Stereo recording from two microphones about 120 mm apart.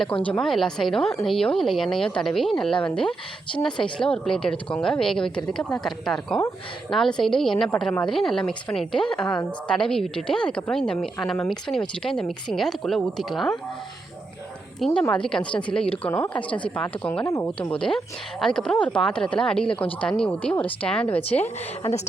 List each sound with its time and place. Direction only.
0.3 s a woman's voice: 5° left (ahead or behind)
14.8 s a woman's voice: centre (ahead or behind)
17.2 s speech: 25° left (ahead or behind)
17.6 s a woman's voice: 10° left (ahead or behind)